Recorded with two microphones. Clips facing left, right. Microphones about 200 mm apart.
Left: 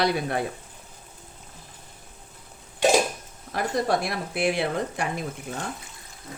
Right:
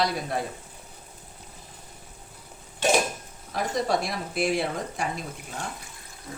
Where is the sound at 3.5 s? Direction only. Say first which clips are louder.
Left 1 dB; 60° left (ahead or behind).